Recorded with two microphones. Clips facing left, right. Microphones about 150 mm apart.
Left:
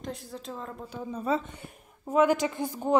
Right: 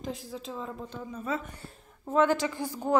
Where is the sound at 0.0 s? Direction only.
Centre (ahead or behind).